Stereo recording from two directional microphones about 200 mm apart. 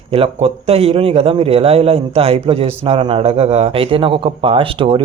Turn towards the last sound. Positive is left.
turn(degrees=-25)  # may be behind; listen again after turning